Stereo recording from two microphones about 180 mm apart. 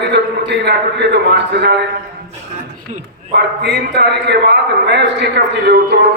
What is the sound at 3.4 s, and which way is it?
A man's voice, 70° right (ahead or behind).